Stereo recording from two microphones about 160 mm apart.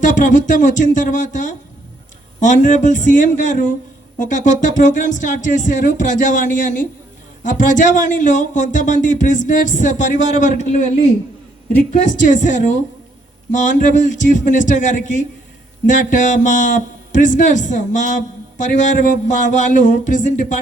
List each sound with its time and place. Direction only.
0.0 s a man's voice: 50° left (ahead or behind)